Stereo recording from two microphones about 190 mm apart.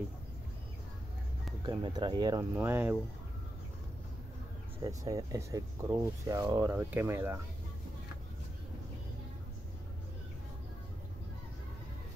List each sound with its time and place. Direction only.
1.6 s speech: 20° right (ahead or behind)
2.5 s speech: 10° right (ahead or behind)
4.8 s speech: 20° right (ahead or behind)